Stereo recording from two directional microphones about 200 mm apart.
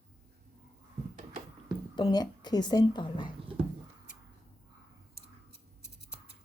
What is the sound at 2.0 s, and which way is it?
Speech, 20° left (ahead or behind).